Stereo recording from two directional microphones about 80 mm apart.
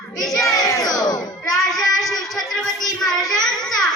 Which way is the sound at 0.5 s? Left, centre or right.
Left.